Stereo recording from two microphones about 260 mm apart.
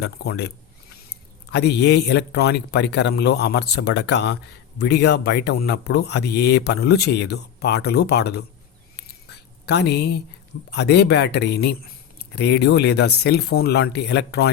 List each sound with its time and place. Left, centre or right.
0.0 s speech: left
1.5 s speech: left
9.6 s speech: left